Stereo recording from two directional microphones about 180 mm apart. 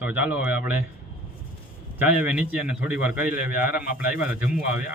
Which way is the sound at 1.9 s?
10° right (ahead or behind).